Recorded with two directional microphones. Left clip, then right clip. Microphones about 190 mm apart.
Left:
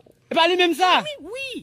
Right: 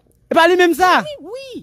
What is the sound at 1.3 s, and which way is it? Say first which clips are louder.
Speech: even; 65° right (ahead or behind).